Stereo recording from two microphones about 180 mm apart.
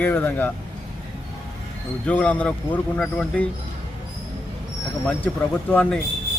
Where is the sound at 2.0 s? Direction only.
10° left (ahead or behind).